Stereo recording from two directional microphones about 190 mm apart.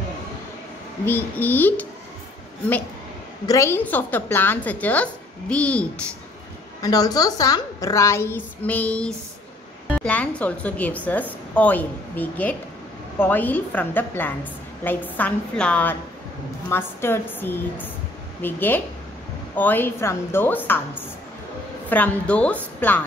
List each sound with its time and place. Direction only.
1.0 s a woman's voice: 10° left (ahead or behind)
3.4 s a woman's voice: 15° left (ahead or behind)
6.8 s a woman's voice: 20° left (ahead or behind)